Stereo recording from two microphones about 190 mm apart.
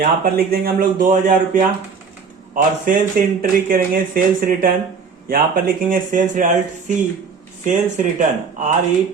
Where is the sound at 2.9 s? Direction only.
45° right (ahead or behind).